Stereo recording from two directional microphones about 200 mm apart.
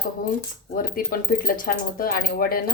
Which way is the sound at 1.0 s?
45° left (ahead or behind).